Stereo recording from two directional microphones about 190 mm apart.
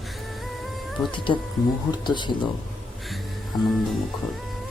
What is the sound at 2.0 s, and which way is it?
Speech, 25° left (ahead or behind).